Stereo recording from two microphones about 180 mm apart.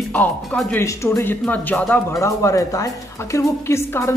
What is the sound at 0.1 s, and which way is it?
Speech, 10° left (ahead or behind).